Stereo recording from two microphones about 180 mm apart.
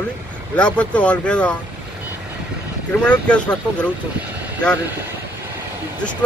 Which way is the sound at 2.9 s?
5° left (ahead or behind).